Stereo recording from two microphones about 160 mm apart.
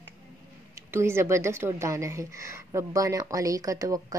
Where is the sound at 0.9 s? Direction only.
15° right (ahead or behind).